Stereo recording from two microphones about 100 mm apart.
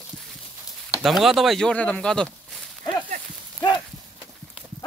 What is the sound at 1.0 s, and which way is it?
Speech, centre (ahead or behind).